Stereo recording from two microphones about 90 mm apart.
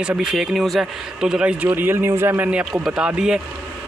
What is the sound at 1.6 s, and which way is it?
Speech, 20° right (ahead or behind).